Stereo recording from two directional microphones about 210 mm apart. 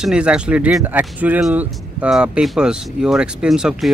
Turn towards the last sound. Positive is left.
turn(degrees=0)  # may be behind; listen again after turning